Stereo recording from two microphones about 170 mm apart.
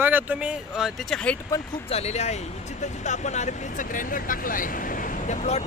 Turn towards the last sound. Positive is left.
turn(degrees=40)  # may be behind; listen again after turning